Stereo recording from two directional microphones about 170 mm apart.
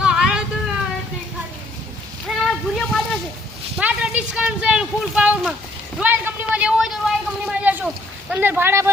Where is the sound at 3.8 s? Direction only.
10° right (ahead or behind).